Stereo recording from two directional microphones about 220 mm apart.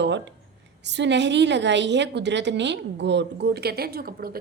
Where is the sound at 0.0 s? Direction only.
55° right (ahead or behind).